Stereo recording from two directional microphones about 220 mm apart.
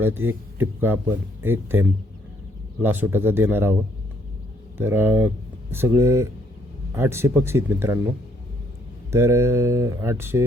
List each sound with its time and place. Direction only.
0.0 s speech: 10° right (ahead or behind)
4.8 s speech: 10° right (ahead or behind)
9.1 s speech: 10° right (ahead or behind)